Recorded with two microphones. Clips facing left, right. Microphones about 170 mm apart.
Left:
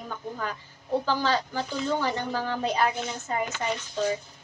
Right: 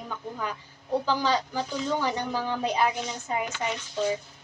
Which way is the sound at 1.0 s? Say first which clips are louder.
Right 1 dB; 15° right (ahead or behind).